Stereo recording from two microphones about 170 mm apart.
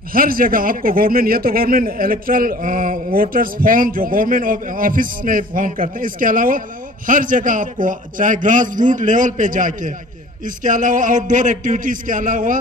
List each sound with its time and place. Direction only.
0.1 s a man's voice: 55° right (ahead or behind)